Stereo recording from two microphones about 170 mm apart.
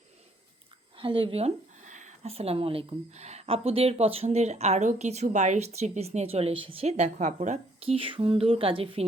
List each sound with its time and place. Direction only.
0.9 s speech: 30° right (ahead or behind)